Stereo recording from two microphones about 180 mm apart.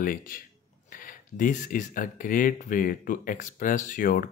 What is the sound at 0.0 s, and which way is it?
Speech, 50° left (ahead or behind).